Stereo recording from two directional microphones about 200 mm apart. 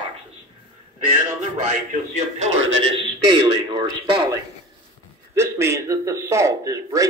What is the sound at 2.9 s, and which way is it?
A man's voice, 25° right (ahead or behind).